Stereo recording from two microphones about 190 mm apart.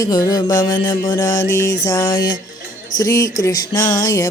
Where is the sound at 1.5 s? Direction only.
15° left (ahead or behind).